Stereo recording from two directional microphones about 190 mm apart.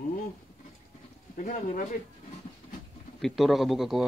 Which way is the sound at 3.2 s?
Centre (ahead or behind).